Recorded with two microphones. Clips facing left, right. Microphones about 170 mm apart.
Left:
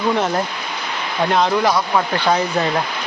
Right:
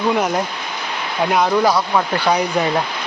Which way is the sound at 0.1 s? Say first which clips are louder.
Even; 10° right (ahead or behind).